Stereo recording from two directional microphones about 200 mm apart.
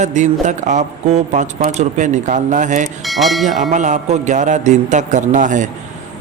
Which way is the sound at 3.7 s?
35° right (ahead or behind).